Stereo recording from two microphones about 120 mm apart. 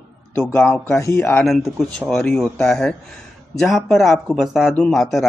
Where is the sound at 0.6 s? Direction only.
20° left (ahead or behind).